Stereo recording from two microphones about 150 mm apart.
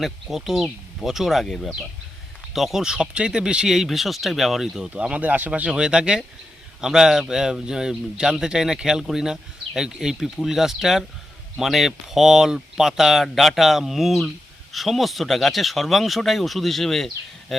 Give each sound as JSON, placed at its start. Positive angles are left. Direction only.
{"t": 0.0, "sound": "speech", "side_deg": 0}